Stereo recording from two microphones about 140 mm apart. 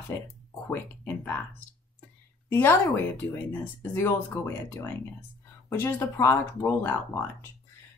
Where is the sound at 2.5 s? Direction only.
15° left (ahead or behind).